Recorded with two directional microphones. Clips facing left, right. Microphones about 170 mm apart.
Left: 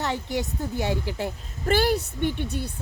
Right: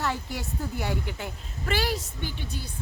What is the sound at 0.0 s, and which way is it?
Speech, 20° left (ahead or behind).